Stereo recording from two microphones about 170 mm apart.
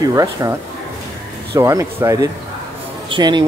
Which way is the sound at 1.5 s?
15° right (ahead or behind).